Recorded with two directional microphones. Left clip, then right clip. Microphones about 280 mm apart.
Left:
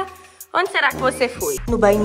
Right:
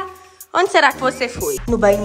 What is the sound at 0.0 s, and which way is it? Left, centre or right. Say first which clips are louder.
Music: left 1 dB; centre.